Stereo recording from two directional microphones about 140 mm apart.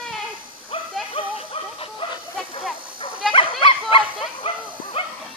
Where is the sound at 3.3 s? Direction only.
40° left (ahead or behind).